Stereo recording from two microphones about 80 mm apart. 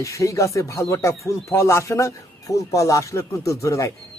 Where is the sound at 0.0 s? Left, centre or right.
Left.